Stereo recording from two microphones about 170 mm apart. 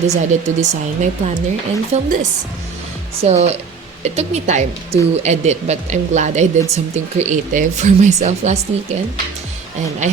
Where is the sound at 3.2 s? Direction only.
40° right (ahead or behind).